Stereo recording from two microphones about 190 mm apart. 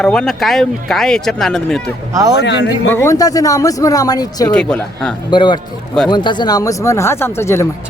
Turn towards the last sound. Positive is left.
turn(degrees=15)  # may be behind; listen again after turning